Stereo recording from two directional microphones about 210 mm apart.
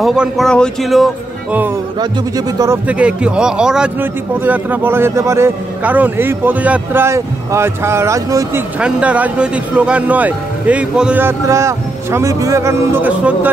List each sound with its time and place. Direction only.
0.0 s speech: centre (ahead or behind)
2.0 s a man's voice: 15° right (ahead or behind)
2.9 s a man's voice: 5° right (ahead or behind)